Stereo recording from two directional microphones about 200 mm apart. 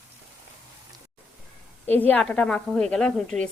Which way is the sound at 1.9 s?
10° left (ahead or behind).